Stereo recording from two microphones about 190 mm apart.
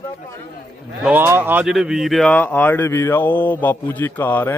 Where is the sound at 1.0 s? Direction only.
10° right (ahead or behind).